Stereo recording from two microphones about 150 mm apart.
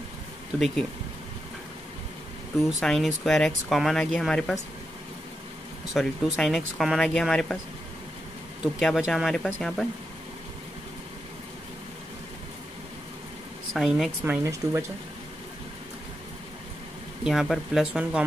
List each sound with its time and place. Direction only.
2.8 s speech: 5° left (ahead or behind)
5.9 s speech: centre (ahead or behind)
8.7 s speech: centre (ahead or behind)
13.7 s speech: centre (ahead or behind)
14.2 s speech: 15° right (ahead or behind)
17.2 s speech: centre (ahead or behind)